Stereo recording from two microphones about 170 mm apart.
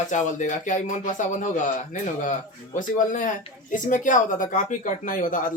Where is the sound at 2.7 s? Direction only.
50° left (ahead or behind).